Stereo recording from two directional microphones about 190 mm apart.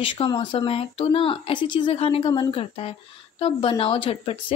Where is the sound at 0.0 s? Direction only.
25° left (ahead or behind).